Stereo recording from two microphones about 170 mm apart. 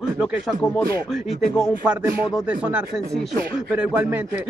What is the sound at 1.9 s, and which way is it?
Speech, 10° right (ahead or behind).